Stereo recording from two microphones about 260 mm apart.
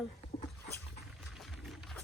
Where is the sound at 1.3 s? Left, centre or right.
Centre.